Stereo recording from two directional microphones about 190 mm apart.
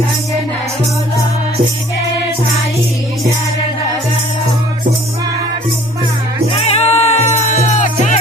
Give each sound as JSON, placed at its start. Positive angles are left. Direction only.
{"t": 6.5, "sound": "music", "side_deg": 35}